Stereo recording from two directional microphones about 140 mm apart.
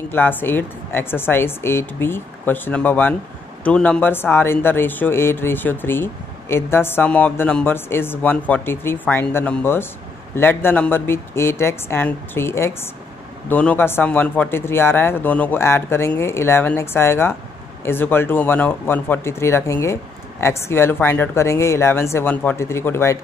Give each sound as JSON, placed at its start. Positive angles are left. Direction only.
{"t": 0.1, "sound": "speech", "side_deg": 15}